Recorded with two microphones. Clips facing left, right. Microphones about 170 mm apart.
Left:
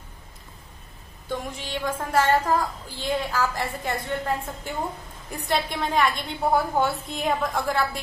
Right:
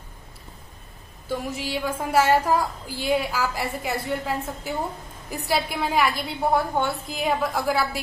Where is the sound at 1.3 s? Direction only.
5° right (ahead or behind).